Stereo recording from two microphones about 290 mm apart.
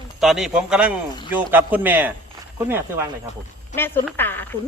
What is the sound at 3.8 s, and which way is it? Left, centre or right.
Speech, centre.